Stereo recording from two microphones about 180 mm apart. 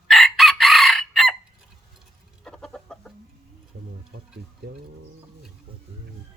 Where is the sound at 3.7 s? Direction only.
55° right (ahead or behind).